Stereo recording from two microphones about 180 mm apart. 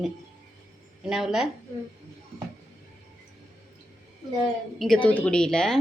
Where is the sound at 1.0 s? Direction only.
Centre (ahead or behind).